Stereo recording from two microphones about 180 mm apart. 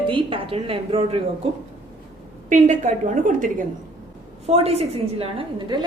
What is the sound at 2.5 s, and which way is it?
A woman's voice, 45° right (ahead or behind).